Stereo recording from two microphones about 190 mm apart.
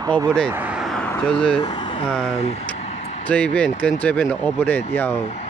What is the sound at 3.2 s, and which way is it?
Speech, 5° left (ahead or behind).